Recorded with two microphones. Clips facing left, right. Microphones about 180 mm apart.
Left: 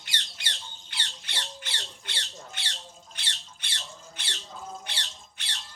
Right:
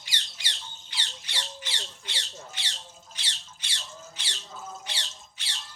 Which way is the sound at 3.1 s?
55° left (ahead or behind).